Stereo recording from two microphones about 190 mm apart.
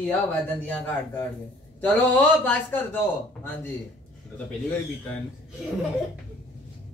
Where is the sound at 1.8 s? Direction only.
10° left (ahead or behind).